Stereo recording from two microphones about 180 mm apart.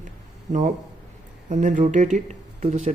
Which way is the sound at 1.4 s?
40° right (ahead or behind).